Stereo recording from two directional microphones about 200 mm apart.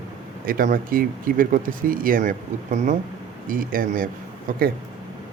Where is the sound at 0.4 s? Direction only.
45° right (ahead or behind).